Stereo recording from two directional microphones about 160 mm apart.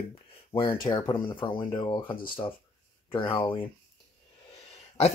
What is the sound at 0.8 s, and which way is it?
Speech, 30° left (ahead or behind).